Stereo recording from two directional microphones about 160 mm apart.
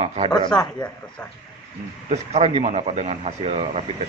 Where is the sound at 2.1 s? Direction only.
40° right (ahead or behind).